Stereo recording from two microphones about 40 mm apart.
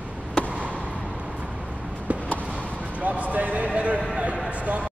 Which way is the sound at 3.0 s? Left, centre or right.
Right.